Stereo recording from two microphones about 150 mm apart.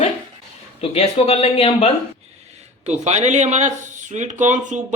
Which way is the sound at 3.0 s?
50° right (ahead or behind).